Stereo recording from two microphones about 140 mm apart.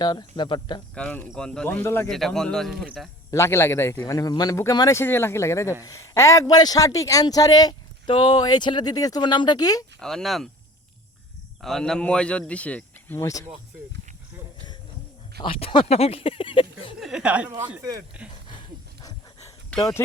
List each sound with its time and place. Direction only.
0.0 s speech: 30° left (ahead or behind)
0.9 s speech: 10° left (ahead or behind)
2.0 s a man's voice: centre (ahead or behind)
3.3 s a man's voice: 20° left (ahead or behind)
10.0 s a man's voice: 5° left (ahead or behind)
11.6 s speech: 5° left (ahead or behind); by 13.4 s 20° left (ahead or behind)
15.4 s speech: 40° left (ahead or behind)
17.0 s a woman's voice: 5° right (ahead or behind)